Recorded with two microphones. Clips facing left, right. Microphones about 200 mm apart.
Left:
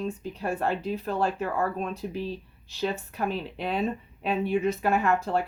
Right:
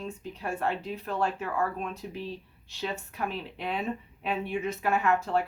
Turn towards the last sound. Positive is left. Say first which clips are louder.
# left 2 dB
turn(degrees=35)  # may be behind; listen again after turning